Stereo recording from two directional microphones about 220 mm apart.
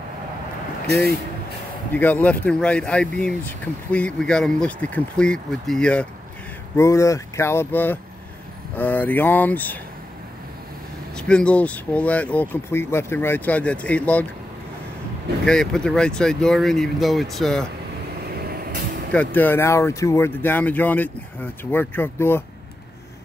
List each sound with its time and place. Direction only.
2.0 s speech: 10° left (ahead or behind)
11.1 s speech: 5° left (ahead or behind)
15.4 s speech: 5° left (ahead or behind)
18.3 s vehicle: 45° right (ahead or behind)
19.1 s speech: 10° left (ahead or behind)